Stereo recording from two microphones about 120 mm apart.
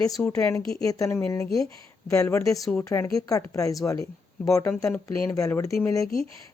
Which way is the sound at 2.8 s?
25° left (ahead or behind).